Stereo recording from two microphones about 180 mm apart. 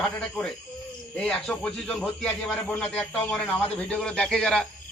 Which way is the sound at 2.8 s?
10° left (ahead or behind).